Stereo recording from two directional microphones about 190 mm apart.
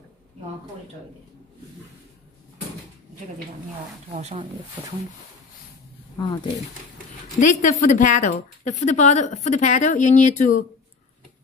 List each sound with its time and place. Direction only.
4.1 s speech: 35° right (ahead or behind)
6.1 s speech: 20° left (ahead or behind)
7.3 s speech: 45° left (ahead or behind)